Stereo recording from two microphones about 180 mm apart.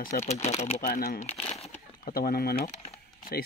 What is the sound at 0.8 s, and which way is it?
Crumpling, 50° left (ahead or behind).